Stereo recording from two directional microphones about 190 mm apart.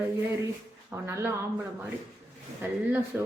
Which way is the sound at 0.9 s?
10° right (ahead or behind).